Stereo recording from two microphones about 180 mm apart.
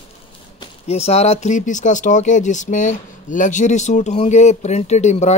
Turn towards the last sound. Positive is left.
turn(degrees=40)  # may be behind; listen again after turning